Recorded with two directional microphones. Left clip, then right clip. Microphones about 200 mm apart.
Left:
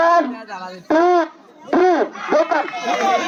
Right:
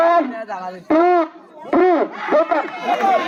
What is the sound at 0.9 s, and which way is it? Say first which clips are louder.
Speech: even; 20° right (ahead or behind).